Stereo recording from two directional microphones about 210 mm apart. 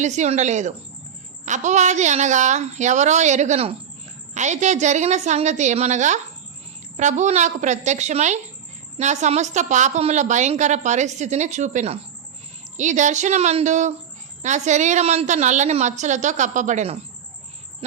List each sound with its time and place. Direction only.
0.0 s a woman's voice: 35° right (ahead or behind)